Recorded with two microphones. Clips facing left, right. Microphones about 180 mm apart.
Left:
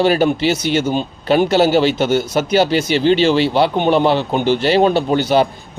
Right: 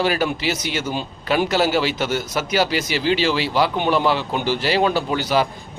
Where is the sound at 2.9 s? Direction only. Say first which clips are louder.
Left 8 dB; 5° right (ahead or behind).